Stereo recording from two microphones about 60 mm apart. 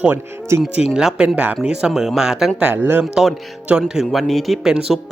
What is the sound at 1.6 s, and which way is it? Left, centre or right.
Speech, centre.